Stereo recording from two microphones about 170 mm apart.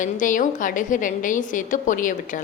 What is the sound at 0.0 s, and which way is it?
A woman's voice, 50° left (ahead or behind).